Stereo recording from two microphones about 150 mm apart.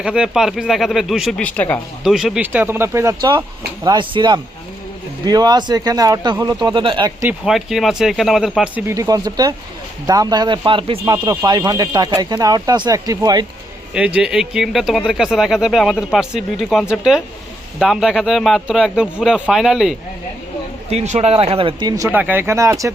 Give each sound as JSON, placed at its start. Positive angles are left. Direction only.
{"t": 0.0, "sound": "speech", "side_deg": -5}
{"t": 1.4, "sound": "speech", "side_deg": 10}
{"t": 2.0, "sound": "speech", "side_deg": -5}
{"t": 3.8, "sound": "speech", "side_deg": -30}
{"t": 7.4, "sound": "speech", "side_deg": 0}
{"t": 8.9, "sound": "speech", "side_deg": -25}
{"t": 13.9, "sound": "speech", "side_deg": -5}
{"t": 20.9, "sound": "speech", "side_deg": -45}
{"t": 22.1, "sound": "speech", "side_deg": -10}